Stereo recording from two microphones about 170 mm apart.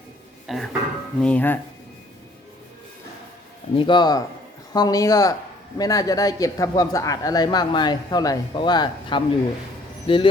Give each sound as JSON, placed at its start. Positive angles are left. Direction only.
{"t": 0.4, "sound": "speech", "side_deg": 0}
{"t": 3.8, "sound": "a man's voice", "side_deg": 25}